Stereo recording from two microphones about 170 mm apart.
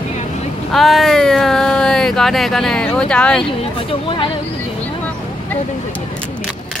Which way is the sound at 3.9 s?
30° left (ahead or behind).